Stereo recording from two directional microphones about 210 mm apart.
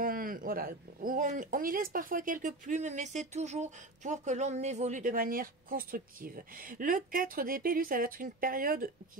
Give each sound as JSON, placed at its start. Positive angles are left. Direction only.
{"t": 0.0, "sound": "speech", "side_deg": -40}